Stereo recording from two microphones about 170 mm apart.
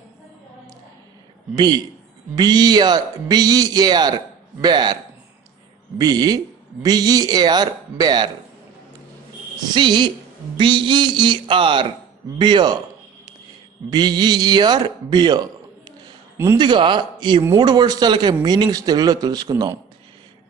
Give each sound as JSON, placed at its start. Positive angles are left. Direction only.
{"t": 1.5, "sound": "speech", "side_deg": -25}
{"t": 5.9, "sound": "speech", "side_deg": -25}
{"t": 9.8, "sound": "speech", "side_deg": -25}
{"t": 13.8, "sound": "speech", "side_deg": -25}
{"t": 16.5, "sound": "speech", "side_deg": -25}